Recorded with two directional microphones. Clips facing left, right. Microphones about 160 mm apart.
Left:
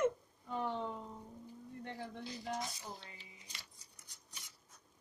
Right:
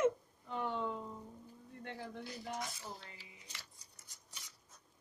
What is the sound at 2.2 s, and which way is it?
Speech, 20° left (ahead or behind).